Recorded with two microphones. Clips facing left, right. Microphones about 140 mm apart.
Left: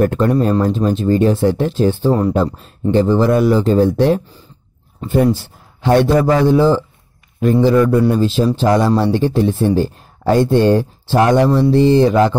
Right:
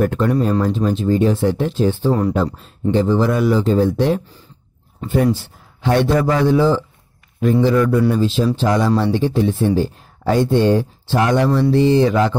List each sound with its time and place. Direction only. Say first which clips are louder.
0.0 s a man's voice: left 3 dB; 40° left (ahead or behind)
6.1 s speech: left 3 dB; 30° left (ahead or behind)